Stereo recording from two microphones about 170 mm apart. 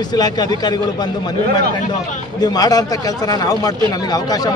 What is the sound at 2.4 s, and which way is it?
A man's voice, 20° left (ahead or behind).